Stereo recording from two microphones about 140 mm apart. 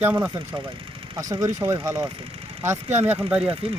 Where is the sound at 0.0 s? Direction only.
15° right (ahead or behind).